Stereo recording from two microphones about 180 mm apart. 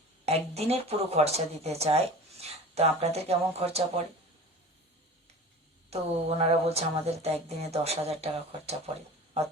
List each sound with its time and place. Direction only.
0.3 s speech: 35° right (ahead or behind)
5.9 s speech: 35° right (ahead or behind)